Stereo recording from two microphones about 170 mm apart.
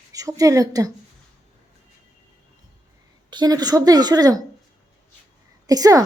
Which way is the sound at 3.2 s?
25° right (ahead or behind).